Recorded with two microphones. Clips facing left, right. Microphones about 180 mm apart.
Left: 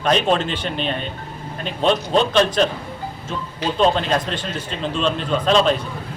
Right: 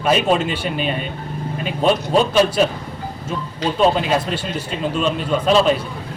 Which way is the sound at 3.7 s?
10° right (ahead or behind).